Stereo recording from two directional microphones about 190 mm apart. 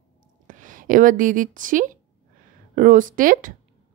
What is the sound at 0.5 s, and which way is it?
A woman's voice, 45° right (ahead or behind).